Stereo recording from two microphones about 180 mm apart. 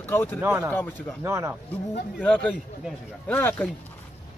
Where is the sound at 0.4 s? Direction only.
10° right (ahead or behind).